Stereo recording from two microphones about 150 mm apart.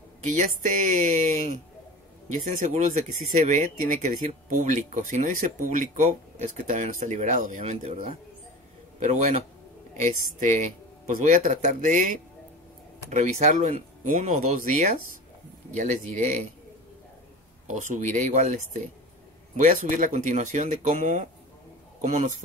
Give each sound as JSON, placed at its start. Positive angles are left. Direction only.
{"t": 0.2, "sound": "speech", "side_deg": -55}
{"t": 13.1, "sound": "speech", "side_deg": -50}
{"t": 17.6, "sound": "speech", "side_deg": -55}